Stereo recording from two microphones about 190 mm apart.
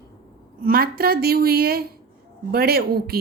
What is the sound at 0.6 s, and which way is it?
A woman's voice, 55° right (ahead or behind).